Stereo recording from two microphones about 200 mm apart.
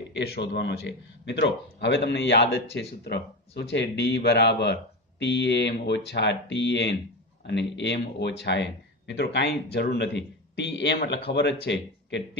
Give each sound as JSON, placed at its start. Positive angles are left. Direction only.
{"t": 0.1, "sound": "speech", "side_deg": 55}